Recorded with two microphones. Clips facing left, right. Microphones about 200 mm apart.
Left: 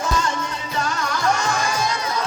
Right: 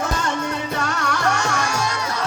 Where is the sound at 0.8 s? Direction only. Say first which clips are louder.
Left 3 dB; 70° right (ahead or behind).